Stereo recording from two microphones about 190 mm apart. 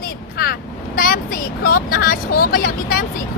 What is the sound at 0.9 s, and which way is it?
Vehicle, 50° left (ahead or behind).